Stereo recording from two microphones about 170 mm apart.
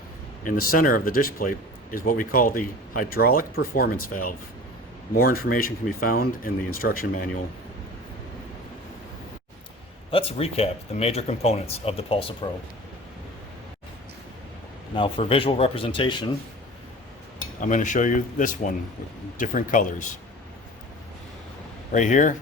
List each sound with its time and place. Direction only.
0.4 s speech: 55° left (ahead or behind)
10.1 s speech: 35° left (ahead or behind)
14.9 s speech: 30° left (ahead or behind)
17.6 s speech: 50° left (ahead or behind)
21.9 s speech: 45° left (ahead or behind)